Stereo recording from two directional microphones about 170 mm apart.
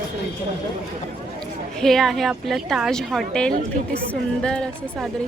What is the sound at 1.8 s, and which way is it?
A woman's voice, centre (ahead or behind).